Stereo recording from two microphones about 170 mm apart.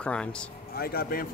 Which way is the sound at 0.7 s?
65° left (ahead or behind).